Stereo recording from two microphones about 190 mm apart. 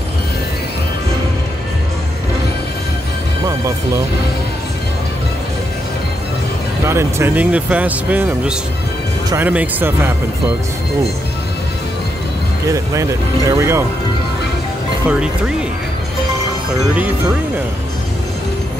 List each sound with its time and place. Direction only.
3.4 s speech: 15° right (ahead or behind)
6.9 s speech: 15° right (ahead or behind)
12.6 s speech: 15° right (ahead or behind)
15.0 s speech: 5° right (ahead or behind)